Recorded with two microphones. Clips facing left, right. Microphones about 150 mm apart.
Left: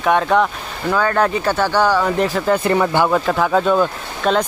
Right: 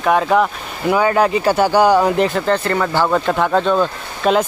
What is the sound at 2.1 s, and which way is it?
Speech, centre (ahead or behind).